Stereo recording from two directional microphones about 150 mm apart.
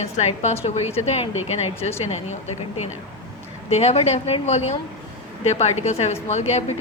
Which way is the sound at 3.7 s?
45° left (ahead or behind).